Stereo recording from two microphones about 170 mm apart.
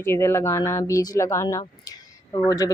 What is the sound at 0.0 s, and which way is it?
Speech, 15° left (ahead or behind).